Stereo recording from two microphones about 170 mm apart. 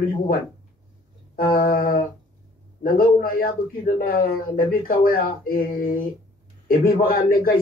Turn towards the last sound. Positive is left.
turn(degrees=55)  # may be behind; listen again after turning